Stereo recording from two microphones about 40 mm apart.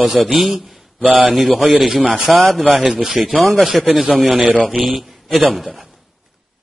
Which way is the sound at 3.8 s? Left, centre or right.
Centre.